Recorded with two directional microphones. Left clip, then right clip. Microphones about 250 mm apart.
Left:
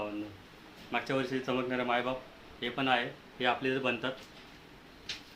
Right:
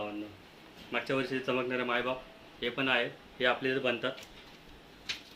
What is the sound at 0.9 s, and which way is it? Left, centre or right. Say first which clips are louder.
Speech: even; left.